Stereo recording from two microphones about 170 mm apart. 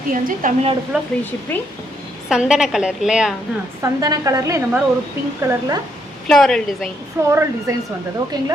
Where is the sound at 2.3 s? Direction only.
5° right (ahead or behind).